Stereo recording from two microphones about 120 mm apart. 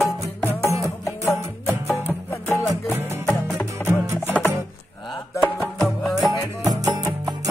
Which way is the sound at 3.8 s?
20° right (ahead or behind).